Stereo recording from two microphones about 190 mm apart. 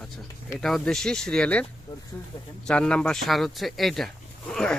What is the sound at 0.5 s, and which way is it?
Speech, centre (ahead or behind).